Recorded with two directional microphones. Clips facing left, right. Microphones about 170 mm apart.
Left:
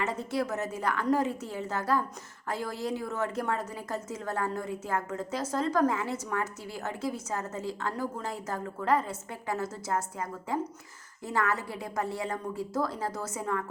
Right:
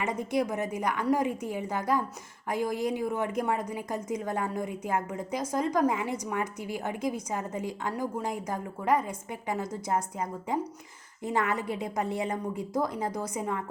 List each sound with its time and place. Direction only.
0.0 s a woman's voice: 15° right (ahead or behind)